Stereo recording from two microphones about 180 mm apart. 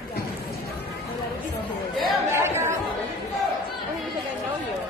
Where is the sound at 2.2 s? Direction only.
15° right (ahead or behind).